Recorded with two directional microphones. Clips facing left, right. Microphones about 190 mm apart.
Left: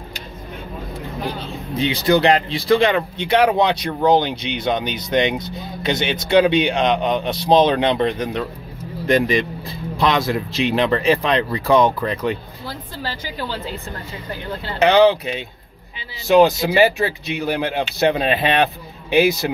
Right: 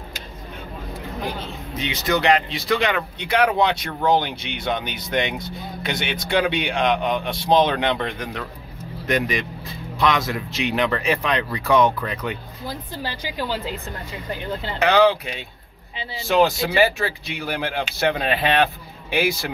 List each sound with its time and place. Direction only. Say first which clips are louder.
1.7 s speech: left 7 dB; 30° left (ahead or behind)
12.6 s speech: even; 15° right (ahead or behind)
14.8 s speech: left 4 dB; 20° left (ahead or behind)